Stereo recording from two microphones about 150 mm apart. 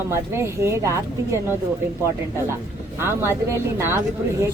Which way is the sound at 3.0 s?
15° right (ahead or behind).